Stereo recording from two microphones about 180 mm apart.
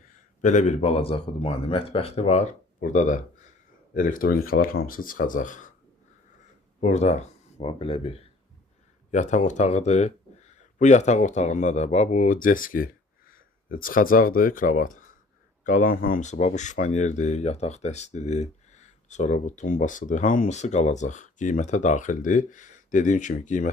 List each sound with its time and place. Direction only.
0.4 s speech: 45° left (ahead or behind)
6.7 s speech: 40° left (ahead or behind)